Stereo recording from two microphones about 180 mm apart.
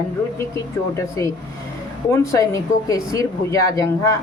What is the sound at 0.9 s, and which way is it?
Speech, 15° left (ahead or behind).